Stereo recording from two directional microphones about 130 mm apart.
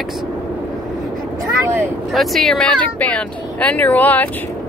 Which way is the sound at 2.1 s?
Centre (ahead or behind).